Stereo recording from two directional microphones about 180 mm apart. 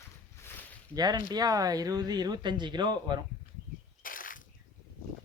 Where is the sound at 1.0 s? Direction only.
20° right (ahead or behind).